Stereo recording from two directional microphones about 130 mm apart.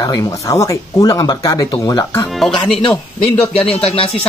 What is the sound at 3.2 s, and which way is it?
Speech, 45° left (ahead or behind).